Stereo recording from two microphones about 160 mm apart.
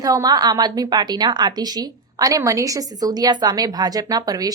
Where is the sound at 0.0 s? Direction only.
20° right (ahead or behind).